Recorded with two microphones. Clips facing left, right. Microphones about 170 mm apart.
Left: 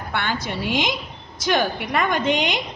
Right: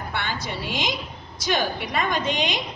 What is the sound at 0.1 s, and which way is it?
A woman's voice, 60° left (ahead or behind).